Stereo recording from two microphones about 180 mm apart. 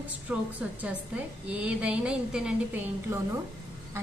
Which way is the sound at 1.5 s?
5° right (ahead or behind).